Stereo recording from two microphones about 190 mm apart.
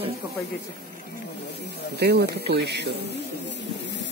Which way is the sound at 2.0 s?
60° right (ahead or behind).